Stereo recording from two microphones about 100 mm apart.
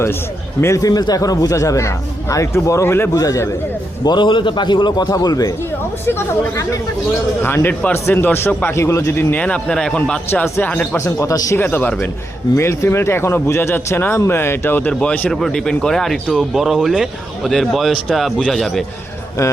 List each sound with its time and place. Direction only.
0.6 s speech: 35° left (ahead or behind)
4.0 s a man's voice: 50° left (ahead or behind); by 6.7 s 30° left (ahead or behind)
7.4 s speech: 20° left (ahead or behind)
9.3 s speech: 15° left (ahead or behind)
10.2 s speech: 20° left (ahead or behind)
10.9 s speech: 30° left (ahead or behind)
11.6 s speech: 15° left (ahead or behind)
12.5 s speech: 25° left (ahead or behind); by 18.9 s centre (ahead or behind)